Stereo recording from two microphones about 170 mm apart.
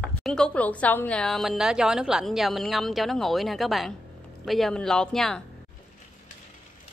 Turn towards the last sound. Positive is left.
turn(degrees=5)  # may be behind; listen again after turning